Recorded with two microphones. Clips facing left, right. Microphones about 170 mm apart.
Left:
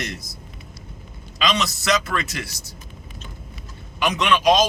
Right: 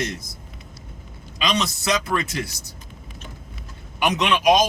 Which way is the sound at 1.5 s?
15° right (ahead or behind).